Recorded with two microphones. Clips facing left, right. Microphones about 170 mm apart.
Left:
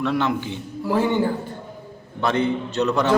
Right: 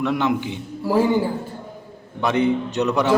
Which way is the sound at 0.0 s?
15° right (ahead or behind).